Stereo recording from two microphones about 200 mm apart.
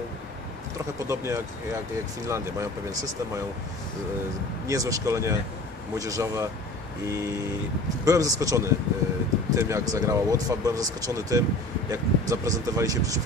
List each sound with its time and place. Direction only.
1.0 s speech: 15° right (ahead or behind)
4.6 s speech: 15° right (ahead or behind)
8.0 s speech: 15° right (ahead or behind)